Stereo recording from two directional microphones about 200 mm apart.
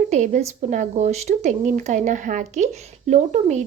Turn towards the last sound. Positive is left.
turn(degrees=-35)  # may be behind; listen again after turning